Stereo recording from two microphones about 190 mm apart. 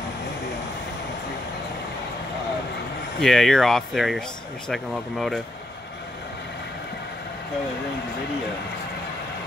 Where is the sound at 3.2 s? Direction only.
Centre (ahead or behind).